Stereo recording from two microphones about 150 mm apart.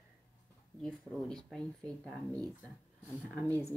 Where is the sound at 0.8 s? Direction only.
5° left (ahead or behind).